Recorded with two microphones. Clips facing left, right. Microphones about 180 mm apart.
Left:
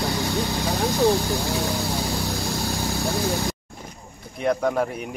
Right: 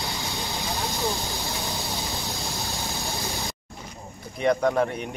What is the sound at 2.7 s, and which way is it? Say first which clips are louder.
Vehicle: left 7 dB; 35° left (ahead or behind).